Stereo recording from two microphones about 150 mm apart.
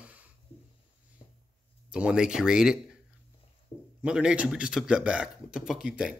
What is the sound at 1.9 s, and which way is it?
Speech, 5° right (ahead or behind).